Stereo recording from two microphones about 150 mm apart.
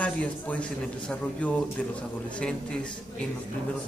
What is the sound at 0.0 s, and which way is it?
Speech, 10° left (ahead or behind).